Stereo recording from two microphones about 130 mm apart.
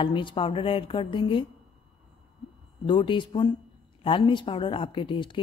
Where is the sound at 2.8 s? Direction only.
40° left (ahead or behind).